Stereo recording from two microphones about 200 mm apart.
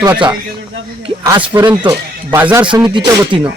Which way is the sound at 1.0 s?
20° right (ahead or behind).